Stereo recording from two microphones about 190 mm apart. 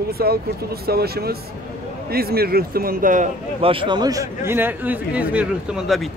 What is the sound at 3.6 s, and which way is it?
Speech, 25° right (ahead or behind).